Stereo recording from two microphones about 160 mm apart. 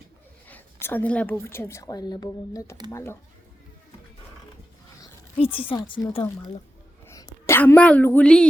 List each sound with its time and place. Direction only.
0.4 s a woman's voice: 10° left (ahead or behind)
5.4 s a woman's voice: 35° left (ahead or behind); by 8.4 s 5° left (ahead or behind)